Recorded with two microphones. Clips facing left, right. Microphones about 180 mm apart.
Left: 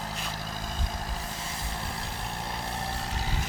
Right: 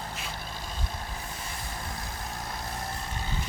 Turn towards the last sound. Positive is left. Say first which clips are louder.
# left 2 dB
turn(degrees=75)  # may be behind; listen again after turning